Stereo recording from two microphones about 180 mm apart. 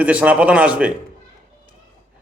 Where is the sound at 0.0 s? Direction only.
5° right (ahead or behind).